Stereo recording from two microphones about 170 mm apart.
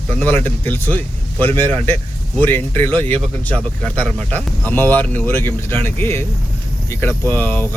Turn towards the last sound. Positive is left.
turn(degrees=10)  # may be behind; listen again after turning